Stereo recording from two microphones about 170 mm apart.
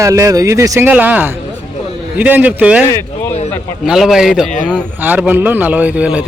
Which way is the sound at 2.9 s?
15° left (ahead or behind).